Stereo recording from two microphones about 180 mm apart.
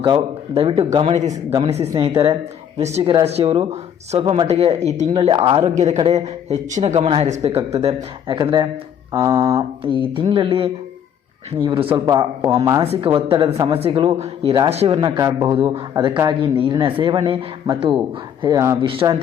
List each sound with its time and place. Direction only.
0.0 s speech: 30° right (ahead or behind)
5.7 s speech: 40° right (ahead or behind); by 12.8 s 20° right (ahead or behind)
12.8 s speech: 30° right (ahead or behind)
18.4 s speech: 20° right (ahead or behind)
18.9 s speech: 30° right (ahead or behind)